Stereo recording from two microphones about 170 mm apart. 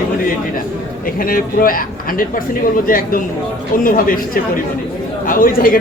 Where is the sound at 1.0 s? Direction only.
55° left (ahead or behind).